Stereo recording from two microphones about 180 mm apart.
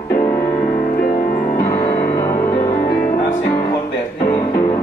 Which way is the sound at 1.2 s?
45° left (ahead or behind).